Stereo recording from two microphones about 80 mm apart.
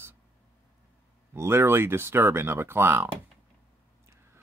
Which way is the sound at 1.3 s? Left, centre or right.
Right.